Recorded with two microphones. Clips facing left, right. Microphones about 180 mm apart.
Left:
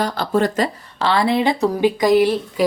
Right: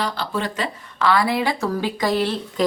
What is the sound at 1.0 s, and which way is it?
A woman's voice, 25° left (ahead or behind).